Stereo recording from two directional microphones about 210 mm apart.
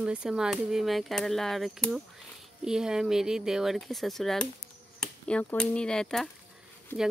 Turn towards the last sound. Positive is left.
turn(degrees=-10)  # may be behind; listen again after turning